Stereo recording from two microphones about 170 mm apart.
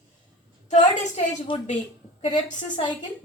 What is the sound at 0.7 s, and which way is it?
Speech, 45° left (ahead or behind).